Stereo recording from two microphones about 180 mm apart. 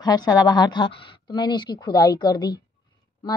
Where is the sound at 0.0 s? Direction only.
20° left (ahead or behind).